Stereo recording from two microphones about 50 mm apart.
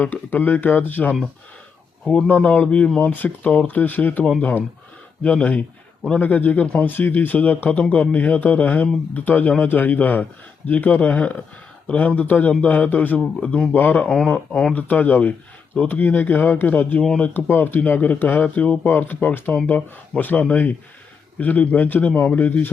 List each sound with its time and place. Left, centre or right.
0.0 s speech: left
2.2 s speech: left
3.1 s speech: left
11.1 s speech: left
13.7 s speech: left
14.0 s speech: left
14.8 s speech: left
17.5 s speech: left